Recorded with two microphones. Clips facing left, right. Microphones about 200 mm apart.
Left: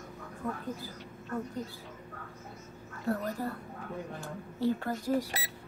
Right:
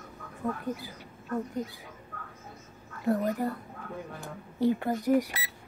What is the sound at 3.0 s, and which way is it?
A woman's voice, 15° right (ahead or behind).